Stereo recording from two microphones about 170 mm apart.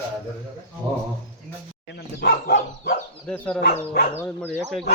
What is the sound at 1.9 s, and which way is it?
Speech, 70° left (ahead or behind).